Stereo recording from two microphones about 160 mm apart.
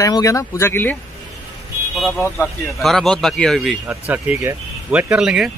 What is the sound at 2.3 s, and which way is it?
Speech, centre (ahead or behind).